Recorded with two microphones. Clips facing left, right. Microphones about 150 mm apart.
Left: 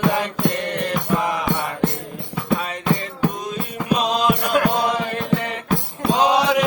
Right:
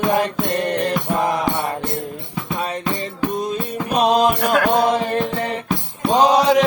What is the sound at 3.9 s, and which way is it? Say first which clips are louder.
Music: right 4 dB; 55° right (ahead or behind).